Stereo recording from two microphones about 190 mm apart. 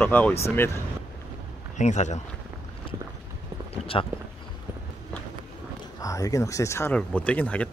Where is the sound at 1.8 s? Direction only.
35° left (ahead or behind).